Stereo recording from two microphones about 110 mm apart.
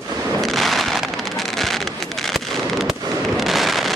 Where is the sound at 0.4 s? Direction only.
Centre (ahead or behind).